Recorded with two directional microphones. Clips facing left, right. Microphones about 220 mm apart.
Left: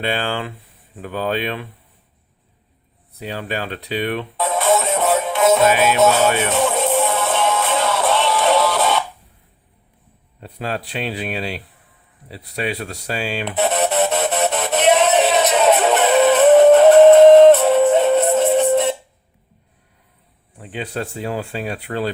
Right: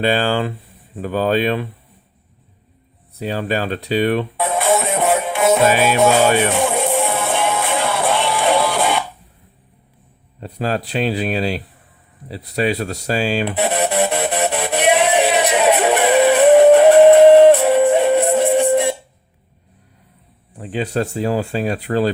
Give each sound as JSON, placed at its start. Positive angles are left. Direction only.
{"t": 0.0, "sound": "speech", "side_deg": -35}
{"t": 3.2, "sound": "speech", "side_deg": -40}
{"t": 4.4, "sound": "music", "side_deg": -15}
{"t": 5.6, "sound": "speech", "side_deg": -35}
{"t": 6.0, "sound": "music", "side_deg": -15}
{"t": 6.2, "sound": "speech", "side_deg": -35}
{"t": 6.5, "sound": "music", "side_deg": -15}
{"t": 10.4, "sound": "speech", "side_deg": -40}
{"t": 13.6, "sound": "music", "side_deg": -10}
{"t": 20.6, "sound": "speech", "side_deg": -40}